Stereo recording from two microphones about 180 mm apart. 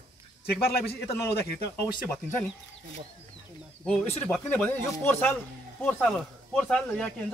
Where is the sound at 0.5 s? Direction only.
60° left (ahead or behind).